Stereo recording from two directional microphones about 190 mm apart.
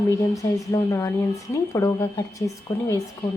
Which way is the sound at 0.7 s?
15° left (ahead or behind).